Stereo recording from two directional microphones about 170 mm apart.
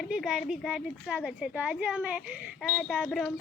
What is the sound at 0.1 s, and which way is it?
A woman's voice, centre (ahead or behind).